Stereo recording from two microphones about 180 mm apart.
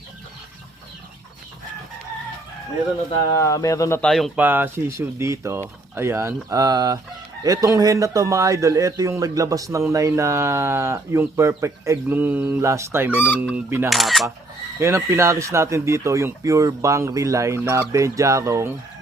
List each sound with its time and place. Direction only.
3.1 s speech: 20° left (ahead or behind)
4.1 s speech: centre (ahead or behind)
4.4 s speech: 10° right (ahead or behind)
13.9 s speech: centre (ahead or behind)
14.8 s speech: 15° right (ahead or behind)